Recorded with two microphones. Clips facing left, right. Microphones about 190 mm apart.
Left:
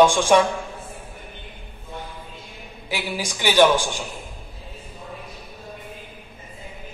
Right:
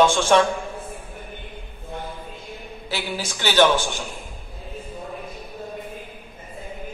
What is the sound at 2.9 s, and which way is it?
Speech, 15° left (ahead or behind).